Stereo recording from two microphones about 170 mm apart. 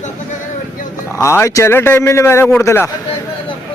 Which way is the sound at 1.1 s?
15° left (ahead or behind).